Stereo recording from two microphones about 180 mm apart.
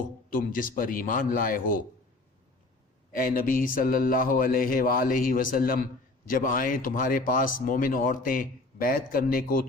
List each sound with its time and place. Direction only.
0.3 s speech: 50° left (ahead or behind)
3.2 s speech: 50° left (ahead or behind)